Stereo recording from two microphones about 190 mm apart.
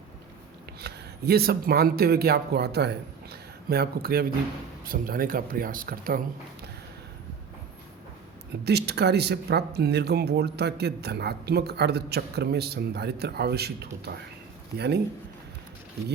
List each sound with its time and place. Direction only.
0.8 s speech: 55° right (ahead or behind)
8.6 s speech: 60° right (ahead or behind)